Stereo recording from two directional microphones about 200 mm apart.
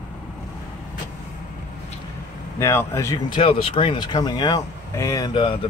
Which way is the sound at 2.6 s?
15° left (ahead or behind).